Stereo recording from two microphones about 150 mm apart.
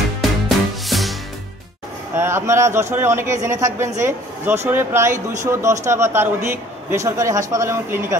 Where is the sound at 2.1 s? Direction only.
15° right (ahead or behind).